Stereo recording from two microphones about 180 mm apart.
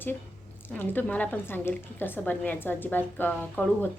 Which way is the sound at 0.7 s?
10° left (ahead or behind).